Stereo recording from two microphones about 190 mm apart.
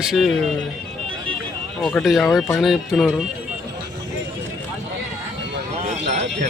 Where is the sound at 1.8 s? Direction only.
Centre (ahead or behind).